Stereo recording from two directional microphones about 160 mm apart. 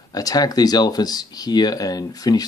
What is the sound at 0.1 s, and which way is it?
Speech, 25° left (ahead or behind).